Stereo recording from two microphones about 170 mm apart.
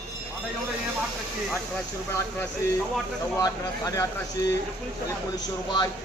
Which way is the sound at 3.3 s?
20° left (ahead or behind).